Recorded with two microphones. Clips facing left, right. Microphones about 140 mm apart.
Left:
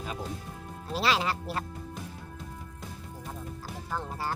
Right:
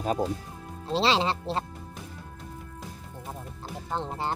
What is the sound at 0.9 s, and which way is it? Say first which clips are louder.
Speech: right 4 dB; 25° right (ahead or behind).